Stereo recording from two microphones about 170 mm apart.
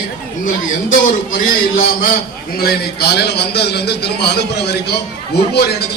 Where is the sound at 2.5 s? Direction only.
65° left (ahead or behind).